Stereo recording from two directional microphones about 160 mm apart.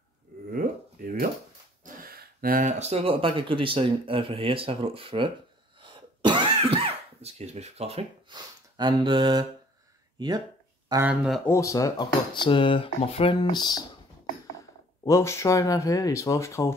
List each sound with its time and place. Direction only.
0.5 s a sound: 60° right (ahead or behind)
2.8 s speech: 40° right (ahead or behind)
5.8 s throat clearing: 30° right (ahead or behind)
8.4 s speech: 25° right (ahead or behind)
11.1 s speech: centre (ahead or behind)
11.4 s speech: 20° left (ahead or behind)
15.0 s speech: 15° left (ahead or behind)